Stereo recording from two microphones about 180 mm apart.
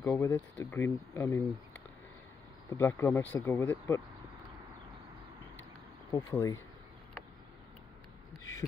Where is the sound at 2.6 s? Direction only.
20° left (ahead or behind).